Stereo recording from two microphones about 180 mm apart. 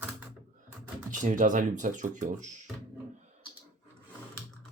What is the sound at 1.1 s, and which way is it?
Speech, 45° right (ahead or behind).